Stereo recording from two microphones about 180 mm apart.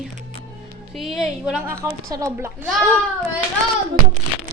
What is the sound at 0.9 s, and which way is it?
Speech, centre (ahead or behind).